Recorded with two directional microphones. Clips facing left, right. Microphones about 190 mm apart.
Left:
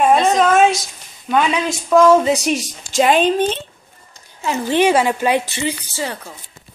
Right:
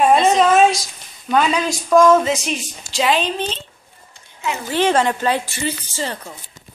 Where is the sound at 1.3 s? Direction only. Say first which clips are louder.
Even; centre (ahead or behind).